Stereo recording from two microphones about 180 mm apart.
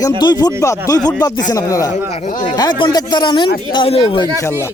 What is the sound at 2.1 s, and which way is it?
Speech, 40° left (ahead or behind).